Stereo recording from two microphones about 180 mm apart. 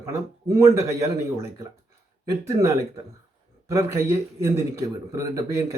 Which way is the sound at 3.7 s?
15° right (ahead or behind).